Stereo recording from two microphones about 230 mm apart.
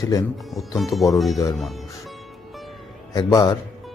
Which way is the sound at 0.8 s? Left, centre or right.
Centre.